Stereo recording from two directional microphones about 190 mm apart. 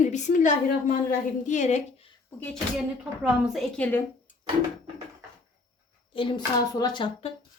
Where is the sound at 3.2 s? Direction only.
5° right (ahead or behind).